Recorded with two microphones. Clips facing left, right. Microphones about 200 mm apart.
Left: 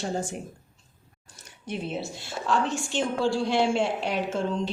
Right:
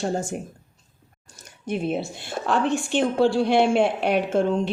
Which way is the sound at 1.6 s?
55° right (ahead or behind).